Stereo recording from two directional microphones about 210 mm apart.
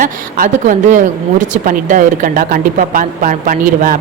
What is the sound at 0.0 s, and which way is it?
Speech, 40° right (ahead or behind).